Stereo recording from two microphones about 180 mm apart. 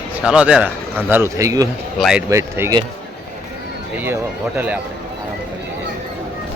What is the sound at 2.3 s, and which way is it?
Speech, 15° right (ahead or behind).